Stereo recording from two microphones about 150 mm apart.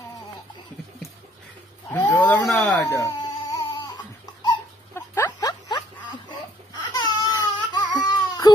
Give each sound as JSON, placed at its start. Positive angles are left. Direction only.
{"t": 1.9, "sound": "speech", "side_deg": 25}
{"t": 2.1, "sound": "speech", "side_deg": 10}
{"t": 2.5, "sound": "speech", "side_deg": 0}
{"t": 2.8, "sound": "crying", "side_deg": 20}
{"t": 4.9, "sound": "a sound", "side_deg": 20}